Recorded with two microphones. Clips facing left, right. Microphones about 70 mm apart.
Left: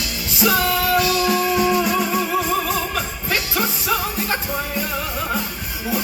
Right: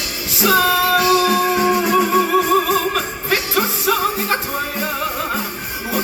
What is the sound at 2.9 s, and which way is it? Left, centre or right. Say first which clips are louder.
Music: right 4 dB; right.